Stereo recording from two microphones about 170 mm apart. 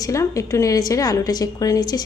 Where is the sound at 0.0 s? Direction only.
20° left (ahead or behind).